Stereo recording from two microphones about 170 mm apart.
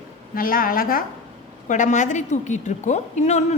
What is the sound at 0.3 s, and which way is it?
Speech, 55° left (ahead or behind).